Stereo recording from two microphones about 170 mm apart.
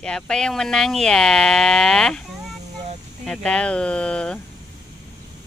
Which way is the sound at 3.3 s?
5° left (ahead or behind).